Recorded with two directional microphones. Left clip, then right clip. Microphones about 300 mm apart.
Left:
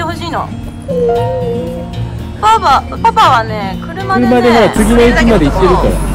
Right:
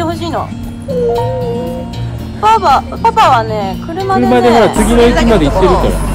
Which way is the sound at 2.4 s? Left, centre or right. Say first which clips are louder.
Even; centre.